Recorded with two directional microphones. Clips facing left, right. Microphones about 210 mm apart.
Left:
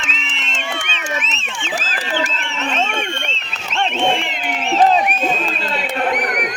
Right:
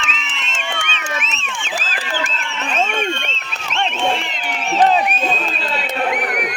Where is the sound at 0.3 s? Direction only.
35° left (ahead or behind).